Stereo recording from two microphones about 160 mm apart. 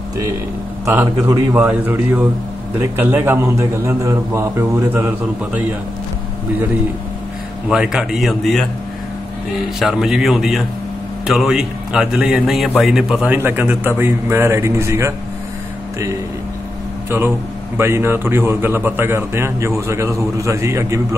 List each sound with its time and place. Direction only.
0.8 s a man's voice: 20° right (ahead or behind)
7.6 s a man's voice: 5° right (ahead or behind)
9.8 s a man's voice: centre (ahead or behind); by 15.1 s 15° right (ahead or behind)
17.7 s a man's voice: 15° right (ahead or behind)